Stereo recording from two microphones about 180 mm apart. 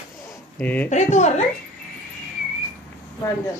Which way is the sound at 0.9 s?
40° left (ahead or behind).